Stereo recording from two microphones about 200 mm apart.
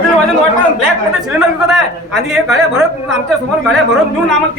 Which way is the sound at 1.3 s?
10° right (ahead or behind).